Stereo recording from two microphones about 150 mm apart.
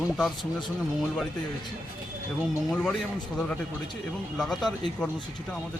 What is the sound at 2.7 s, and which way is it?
Speech, 5° left (ahead or behind).